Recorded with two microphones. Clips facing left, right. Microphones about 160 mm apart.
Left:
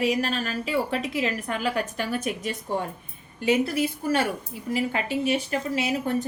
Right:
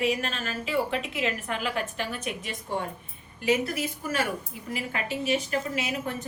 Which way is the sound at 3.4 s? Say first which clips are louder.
Left 3 dB; 30° left (ahead or behind).